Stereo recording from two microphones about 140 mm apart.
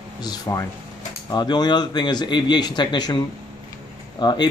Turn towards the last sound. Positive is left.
turn(degrees=30)  # may be behind; listen again after turning